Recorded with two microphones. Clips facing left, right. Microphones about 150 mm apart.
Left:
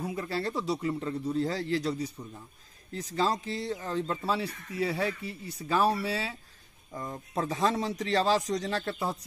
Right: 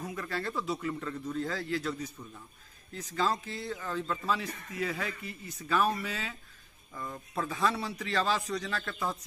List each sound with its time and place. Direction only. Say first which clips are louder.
0.0 s a man's voice: left 4 dB; 25° left (ahead or behind)